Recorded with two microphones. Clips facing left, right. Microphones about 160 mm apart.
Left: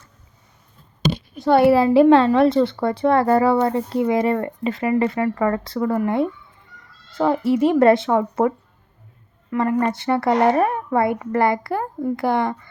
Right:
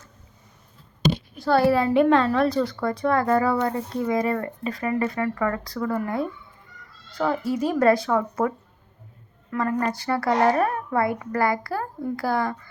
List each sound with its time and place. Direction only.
1.4 s a woman's voice: 20° left (ahead or behind)
7.1 s a woman's voice: 25° left (ahead or behind)
9.8 s a woman's voice: 25° left (ahead or behind)